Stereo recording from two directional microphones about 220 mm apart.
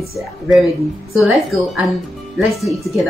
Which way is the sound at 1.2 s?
Centre (ahead or behind).